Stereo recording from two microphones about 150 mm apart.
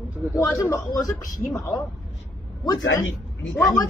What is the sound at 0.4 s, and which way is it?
A man's voice, 20° left (ahead or behind).